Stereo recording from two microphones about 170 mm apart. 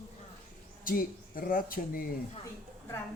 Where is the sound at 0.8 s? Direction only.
55° left (ahead or behind).